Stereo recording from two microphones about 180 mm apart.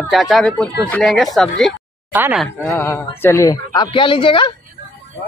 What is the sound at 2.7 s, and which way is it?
Speech, 15° left (ahead or behind).